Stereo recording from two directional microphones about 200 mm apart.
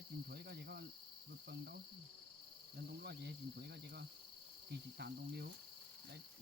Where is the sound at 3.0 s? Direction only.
55° right (ahead or behind).